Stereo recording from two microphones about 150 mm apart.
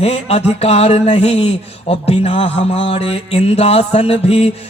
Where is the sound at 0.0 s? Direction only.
45° left (ahead or behind).